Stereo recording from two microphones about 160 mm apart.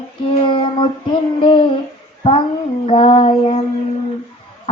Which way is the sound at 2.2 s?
35° left (ahead or behind).